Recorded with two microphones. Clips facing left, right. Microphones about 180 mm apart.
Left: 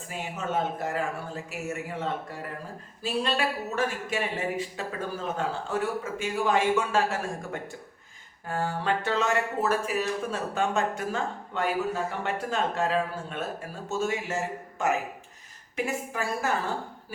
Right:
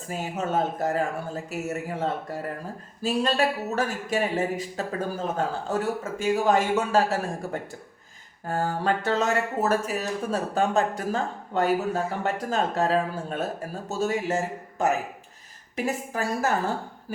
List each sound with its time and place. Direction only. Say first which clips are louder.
0.1 s speech: right 4 dB; 40° right (ahead or behind)